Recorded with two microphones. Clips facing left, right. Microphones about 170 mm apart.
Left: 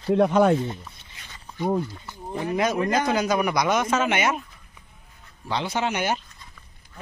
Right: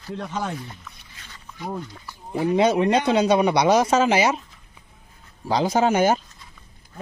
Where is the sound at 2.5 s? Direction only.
30° right (ahead or behind).